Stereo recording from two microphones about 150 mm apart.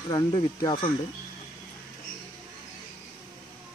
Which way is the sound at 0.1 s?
30° left (ahead or behind).